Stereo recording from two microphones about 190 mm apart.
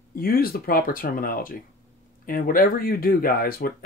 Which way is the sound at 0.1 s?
50° left (ahead or behind).